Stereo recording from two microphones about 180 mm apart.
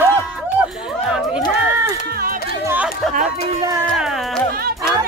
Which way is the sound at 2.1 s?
55° right (ahead or behind).